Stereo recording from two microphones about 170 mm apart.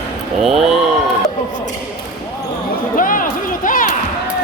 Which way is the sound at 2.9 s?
55° left (ahead or behind).